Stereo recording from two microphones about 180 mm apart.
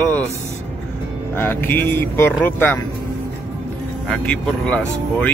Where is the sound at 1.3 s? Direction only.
10° left (ahead or behind).